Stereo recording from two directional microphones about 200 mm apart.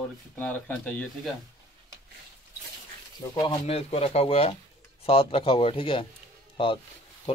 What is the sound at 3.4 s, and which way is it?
Speech, 30° left (ahead or behind).